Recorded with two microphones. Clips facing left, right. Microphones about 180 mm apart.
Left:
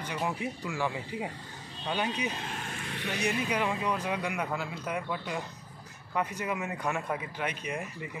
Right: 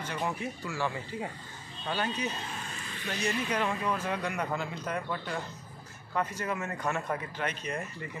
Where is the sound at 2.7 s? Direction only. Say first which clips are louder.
Left 3 dB; 65° left (ahead or behind).